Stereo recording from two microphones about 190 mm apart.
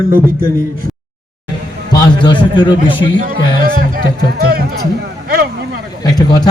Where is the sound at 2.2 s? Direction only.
25° left (ahead or behind).